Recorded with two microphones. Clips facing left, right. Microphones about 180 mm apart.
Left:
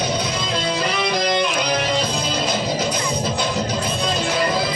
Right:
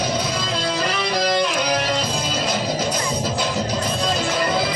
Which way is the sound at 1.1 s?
5° right (ahead or behind).